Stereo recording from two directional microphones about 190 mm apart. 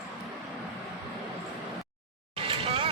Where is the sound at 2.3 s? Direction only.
30° right (ahead or behind).